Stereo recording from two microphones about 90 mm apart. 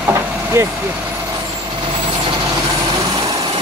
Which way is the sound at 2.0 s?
60° right (ahead or behind).